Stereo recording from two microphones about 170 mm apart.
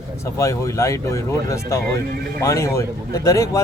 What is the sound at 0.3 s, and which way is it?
Speech, 15° left (ahead or behind).